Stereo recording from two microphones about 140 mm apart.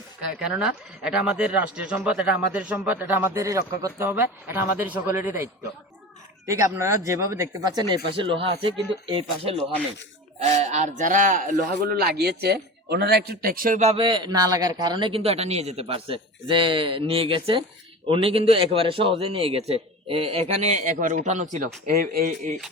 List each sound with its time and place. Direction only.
0.3 s a man's voice: 5° right (ahead or behind); by 12.1 s 90° right
13.4 s speech: 90° right
13.9 s a man's voice: 35° right (ahead or behind); by 22.5 s 90° right